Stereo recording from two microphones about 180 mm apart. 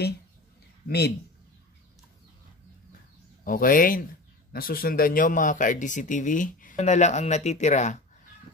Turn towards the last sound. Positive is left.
turn(degrees=40)  # may be behind; listen again after turning